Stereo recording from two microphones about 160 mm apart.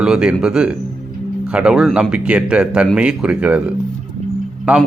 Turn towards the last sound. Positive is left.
turn(degrees=-5)  # may be behind; listen again after turning